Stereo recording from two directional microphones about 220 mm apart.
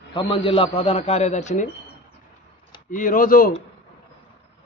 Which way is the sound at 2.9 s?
35° left (ahead or behind).